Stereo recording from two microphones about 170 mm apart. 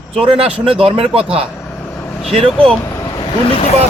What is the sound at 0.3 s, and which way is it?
A man's voice, 35° right (ahead or behind).